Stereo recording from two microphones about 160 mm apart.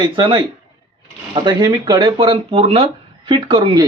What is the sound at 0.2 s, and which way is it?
Speech, 30° right (ahead or behind).